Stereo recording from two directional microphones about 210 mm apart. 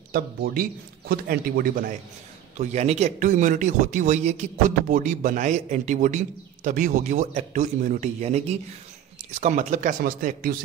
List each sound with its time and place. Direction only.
0.1 s a man's voice: 45° right (ahead or behind)
2.6 s speech: 30° right (ahead or behind)